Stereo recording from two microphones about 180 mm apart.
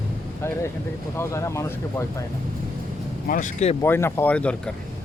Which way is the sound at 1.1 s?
15° left (ahead or behind).